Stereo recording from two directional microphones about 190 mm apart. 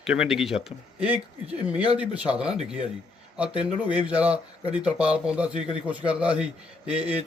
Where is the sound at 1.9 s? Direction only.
5° right (ahead or behind).